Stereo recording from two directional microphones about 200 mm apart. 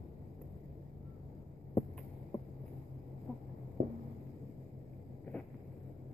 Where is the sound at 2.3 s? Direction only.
20° left (ahead or behind).